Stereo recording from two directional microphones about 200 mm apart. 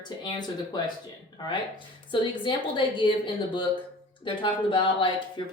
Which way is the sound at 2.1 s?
25° left (ahead or behind).